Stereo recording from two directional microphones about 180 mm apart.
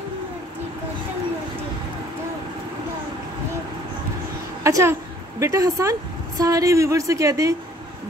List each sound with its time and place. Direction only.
4.6 s a woman's voice: 15° right (ahead or behind)